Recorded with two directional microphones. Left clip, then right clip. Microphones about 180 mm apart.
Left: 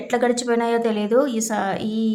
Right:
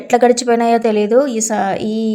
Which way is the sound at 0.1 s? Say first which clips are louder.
Right 8 dB; 30° right (ahead or behind).